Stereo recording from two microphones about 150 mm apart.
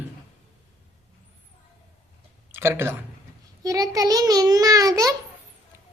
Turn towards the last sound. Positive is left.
turn(degrees=-20)  # may be behind; listen again after turning